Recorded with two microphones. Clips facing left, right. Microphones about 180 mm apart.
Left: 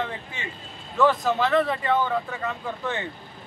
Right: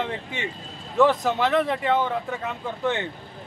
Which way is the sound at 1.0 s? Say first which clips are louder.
Right 1 dB; 20° right (ahead or behind).